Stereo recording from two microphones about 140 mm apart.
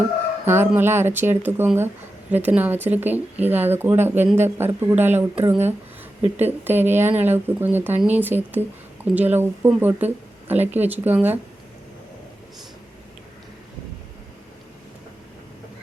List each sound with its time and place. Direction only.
0.4 s speech: 15° right (ahead or behind)